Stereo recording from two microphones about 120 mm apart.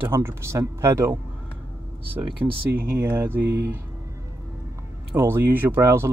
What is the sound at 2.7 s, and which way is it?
Speech, 20° right (ahead or behind).